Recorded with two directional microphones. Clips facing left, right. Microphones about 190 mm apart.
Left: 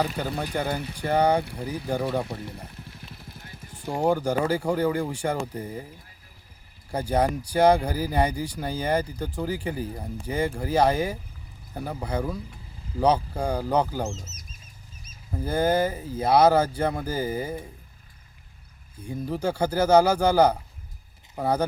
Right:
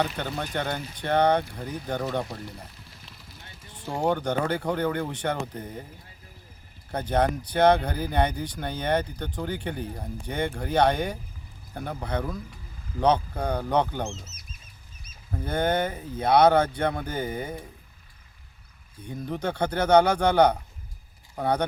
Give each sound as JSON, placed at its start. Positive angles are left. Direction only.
{"t": 0.2, "sound": "speech", "side_deg": 5}
{"t": 2.6, "sound": "vehicle", "side_deg": 55}
{"t": 3.8, "sound": "speech", "side_deg": 10}
{"t": 6.9, "sound": "speech", "side_deg": 10}
{"t": 14.2, "sound": "speech", "side_deg": 45}
{"t": 15.3, "sound": "speech", "side_deg": 5}
{"t": 18.9, "sound": "speech", "side_deg": 10}